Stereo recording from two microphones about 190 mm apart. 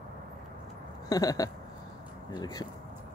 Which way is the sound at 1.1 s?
20° left (ahead or behind).